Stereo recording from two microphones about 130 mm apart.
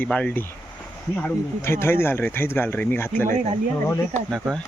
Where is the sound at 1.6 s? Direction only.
20° left (ahead or behind).